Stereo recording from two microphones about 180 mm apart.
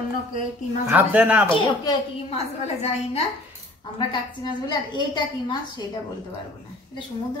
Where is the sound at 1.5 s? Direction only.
30° left (ahead or behind).